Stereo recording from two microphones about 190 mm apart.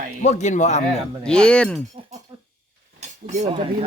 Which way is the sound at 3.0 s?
35° right (ahead or behind).